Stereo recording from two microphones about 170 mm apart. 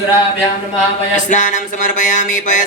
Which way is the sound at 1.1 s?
45° left (ahead or behind).